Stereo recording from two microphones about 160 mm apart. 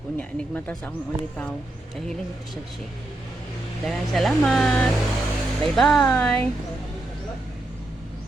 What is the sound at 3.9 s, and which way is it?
Speech, centre (ahead or behind).